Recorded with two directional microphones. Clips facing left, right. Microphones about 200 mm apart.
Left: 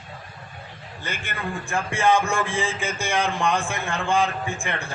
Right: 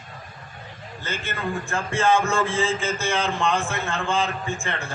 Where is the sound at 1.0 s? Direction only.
15° left (ahead or behind).